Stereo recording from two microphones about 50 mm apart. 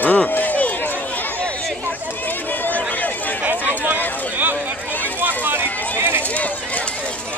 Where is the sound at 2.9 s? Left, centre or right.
Left.